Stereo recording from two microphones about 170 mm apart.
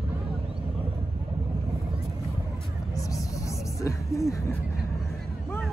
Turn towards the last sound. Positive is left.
turn(degrees=20)  # may be behind; listen again after turning